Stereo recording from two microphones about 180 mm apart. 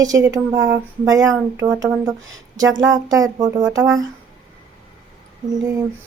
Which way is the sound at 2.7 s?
90° right.